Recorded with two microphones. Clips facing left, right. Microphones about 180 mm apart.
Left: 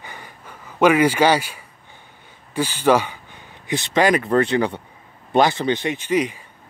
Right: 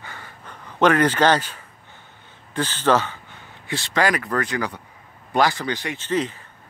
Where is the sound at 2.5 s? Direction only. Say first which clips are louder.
Left 3 dB; 10° left (ahead or behind).